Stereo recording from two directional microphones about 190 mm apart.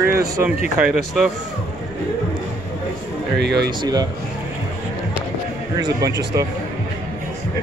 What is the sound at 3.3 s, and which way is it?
Speech, 60° right (ahead or behind).